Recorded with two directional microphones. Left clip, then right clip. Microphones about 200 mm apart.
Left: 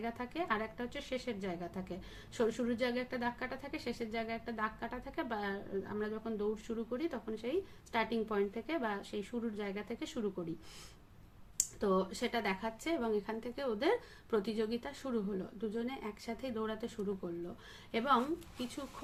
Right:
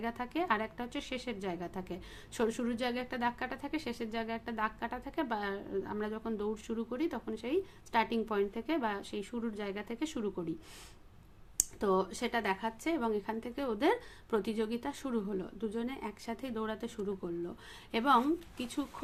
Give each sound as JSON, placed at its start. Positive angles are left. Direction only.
{"t": 0.0, "sound": "a woman's voice", "side_deg": -35}
{"t": 11.5, "sound": "speech", "side_deg": -35}
{"t": 17.9, "sound": "a woman's voice", "side_deg": -35}